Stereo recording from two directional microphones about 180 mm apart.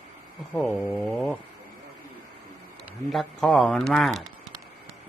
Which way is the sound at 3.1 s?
Centre (ahead or behind).